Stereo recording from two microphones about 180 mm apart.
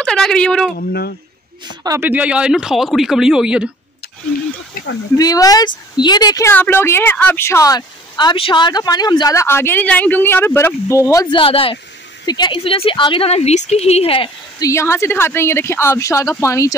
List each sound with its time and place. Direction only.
0.0 s a woman's voice: 5° left (ahead or behind)
0.7 s speech: 60° left (ahead or behind)
1.8 s speech: 15° right (ahead or behind)
5.1 s a woman's voice: 20° left (ahead or behind)
11.3 s speech: 30° left (ahead or behind)
14.6 s a woman's voice: 15° left (ahead or behind)